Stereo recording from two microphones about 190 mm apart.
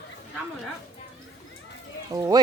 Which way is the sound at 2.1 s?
20° right (ahead or behind).